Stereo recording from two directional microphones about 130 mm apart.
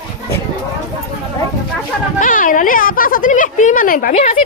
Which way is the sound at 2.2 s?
90° left.